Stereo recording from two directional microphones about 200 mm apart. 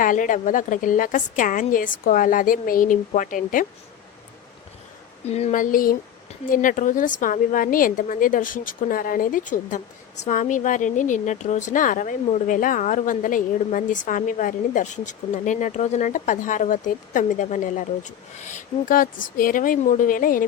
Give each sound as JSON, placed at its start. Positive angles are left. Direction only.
{"t": 0.0, "sound": "a woman's voice", "side_deg": 40}
{"t": 5.2, "sound": "a woman's voice", "side_deg": 30}